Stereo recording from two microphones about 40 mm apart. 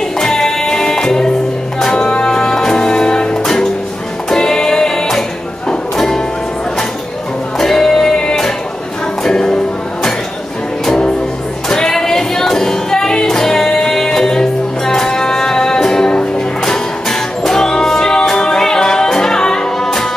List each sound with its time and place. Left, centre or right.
0.2 s music: centre
7.5 s music: centre
11.7 s music: centre